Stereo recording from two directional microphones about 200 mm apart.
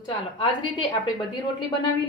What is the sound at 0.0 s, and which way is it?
Speech, 25° left (ahead or behind).